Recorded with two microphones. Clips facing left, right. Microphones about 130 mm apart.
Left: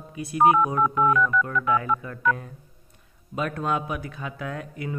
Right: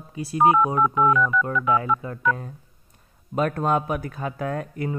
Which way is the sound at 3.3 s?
45° right (ahead or behind).